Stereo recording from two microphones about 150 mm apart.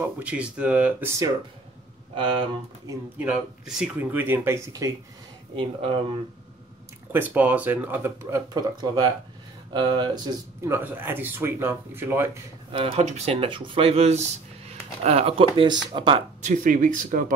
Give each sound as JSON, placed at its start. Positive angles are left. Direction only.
{"t": 0.0, "sound": "speech", "side_deg": -10}
{"t": 3.2, "sound": "speech", "side_deg": -5}
{"t": 5.6, "sound": "speech", "side_deg": -35}
{"t": 7.1, "sound": "speech", "side_deg": -10}
{"t": 8.5, "sound": "speech", "side_deg": -25}
{"t": 10.7, "sound": "speech", "side_deg": -15}
{"t": 12.7, "sound": "speech", "side_deg": -40}
{"t": 16.3, "sound": "speech", "side_deg": -55}